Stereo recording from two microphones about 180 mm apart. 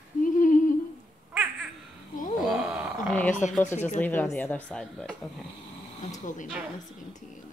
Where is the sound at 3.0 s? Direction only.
10° left (ahead or behind).